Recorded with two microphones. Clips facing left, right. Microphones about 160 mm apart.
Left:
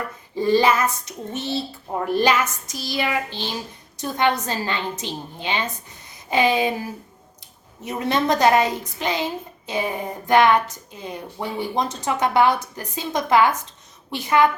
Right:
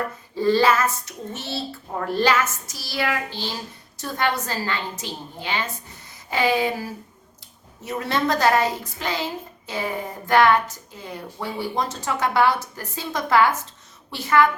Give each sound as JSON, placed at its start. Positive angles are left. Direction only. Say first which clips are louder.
{"t": 0.3, "sound": "a woman's voice", "louder": "left 1 dB", "side_deg": 15}
{"t": 6.1, "sound": "a sound", "louder": "left 2 dB", "side_deg": 20}
{"t": 7.9, "sound": "a woman's voice", "louder": "left 2 dB", "side_deg": 20}